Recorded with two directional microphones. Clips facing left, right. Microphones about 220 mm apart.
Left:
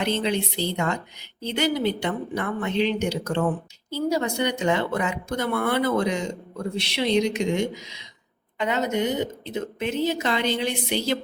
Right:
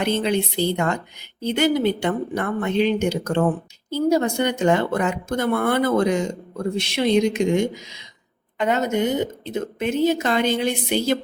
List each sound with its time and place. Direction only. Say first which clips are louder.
0.0 s a woman's voice: right 3 dB; 50° right (ahead or behind)